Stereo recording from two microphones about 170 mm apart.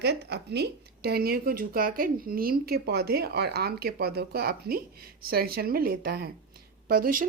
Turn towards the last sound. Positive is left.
turn(degrees=-55)  # may be behind; listen again after turning